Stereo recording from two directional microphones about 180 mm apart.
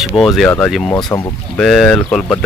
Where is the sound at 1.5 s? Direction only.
5° left (ahead or behind).